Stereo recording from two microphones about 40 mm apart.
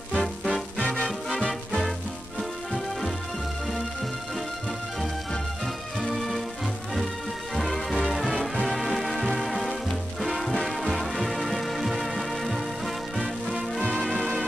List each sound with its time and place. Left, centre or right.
0.5 s music: left
6.0 s music: centre
7.5 s music: centre